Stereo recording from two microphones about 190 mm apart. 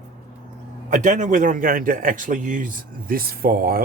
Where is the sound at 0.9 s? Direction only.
40° right (ahead or behind).